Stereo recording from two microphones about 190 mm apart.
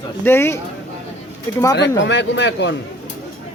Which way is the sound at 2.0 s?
70° left (ahead or behind).